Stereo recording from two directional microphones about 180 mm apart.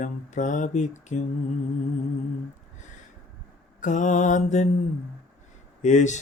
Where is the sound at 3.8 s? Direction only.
45° left (ahead or behind).